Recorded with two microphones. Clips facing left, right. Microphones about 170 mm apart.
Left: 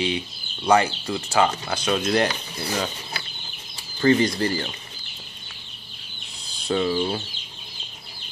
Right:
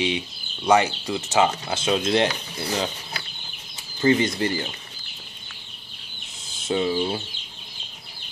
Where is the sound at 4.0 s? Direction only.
20° right (ahead or behind).